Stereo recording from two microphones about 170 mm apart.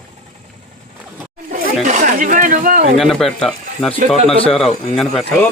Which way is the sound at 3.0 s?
Centre (ahead or behind).